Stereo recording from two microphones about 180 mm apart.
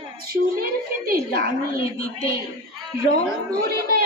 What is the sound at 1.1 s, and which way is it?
Speech, 55° right (ahead or behind).